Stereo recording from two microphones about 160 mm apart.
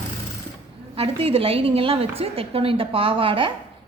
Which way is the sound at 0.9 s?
35° right (ahead or behind).